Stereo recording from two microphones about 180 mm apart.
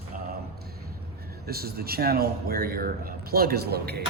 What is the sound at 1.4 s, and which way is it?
A man's voice, 60° right (ahead or behind).